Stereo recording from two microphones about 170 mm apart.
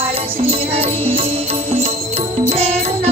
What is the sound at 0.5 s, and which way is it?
Music, 35° right (ahead or behind).